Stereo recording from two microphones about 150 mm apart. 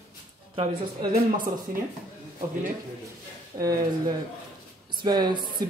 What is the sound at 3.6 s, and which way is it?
Speech, 20° right (ahead or behind).